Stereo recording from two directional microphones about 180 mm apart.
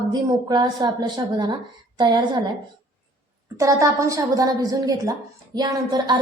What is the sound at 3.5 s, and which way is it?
A woman's voice, 15° right (ahead or behind).